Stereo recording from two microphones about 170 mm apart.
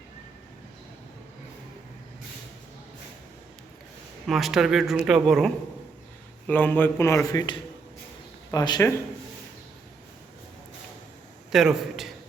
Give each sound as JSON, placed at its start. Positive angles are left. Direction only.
{"t": 4.3, "sound": "speech", "side_deg": 0}
{"t": 6.5, "sound": "a man's voice", "side_deg": 10}
{"t": 7.3, "sound": "speech", "side_deg": 25}
{"t": 11.5, "sound": "speech", "side_deg": -5}